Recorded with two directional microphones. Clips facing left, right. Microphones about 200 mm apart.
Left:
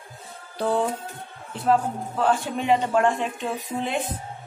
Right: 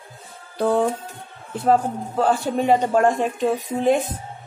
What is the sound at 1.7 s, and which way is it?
A man's voice, 40° right (ahead or behind).